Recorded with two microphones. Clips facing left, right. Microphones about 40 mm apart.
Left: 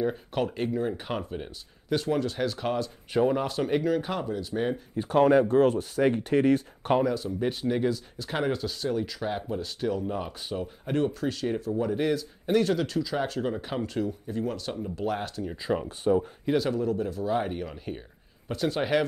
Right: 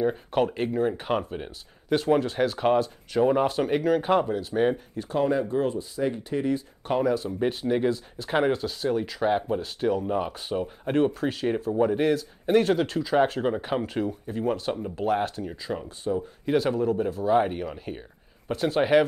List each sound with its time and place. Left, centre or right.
0.0 s speech: centre
3.8 s speech: right
4.9 s speech: left
5.5 s speech: left
7.0 s speech: centre
12.5 s speech: right
15.7 s speech: centre
16.4 s speech: centre